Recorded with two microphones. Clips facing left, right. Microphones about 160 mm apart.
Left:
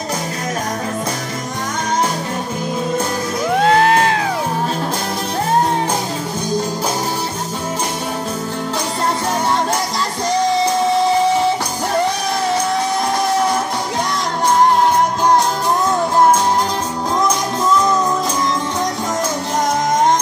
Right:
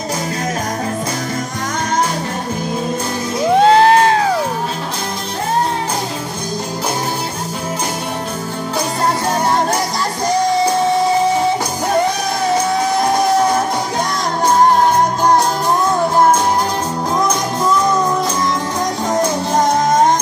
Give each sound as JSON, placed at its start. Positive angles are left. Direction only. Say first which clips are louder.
{"t": 3.4, "sound": "music", "louder": "right 4 dB", "side_deg": -30}